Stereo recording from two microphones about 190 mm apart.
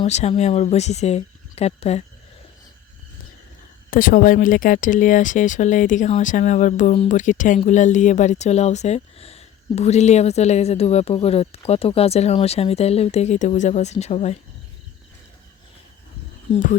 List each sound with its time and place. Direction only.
0.0 s speech: 35° left (ahead or behind)
3.8 s speech: 45° left (ahead or behind)